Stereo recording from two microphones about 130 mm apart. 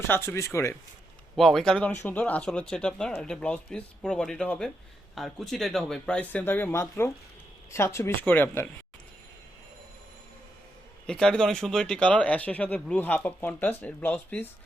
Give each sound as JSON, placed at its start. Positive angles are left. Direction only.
{"t": 0.3, "sound": "speech", "side_deg": 20}
{"t": 1.4, "sound": "speech", "side_deg": 0}
{"t": 11.0, "sound": "speech", "side_deg": 5}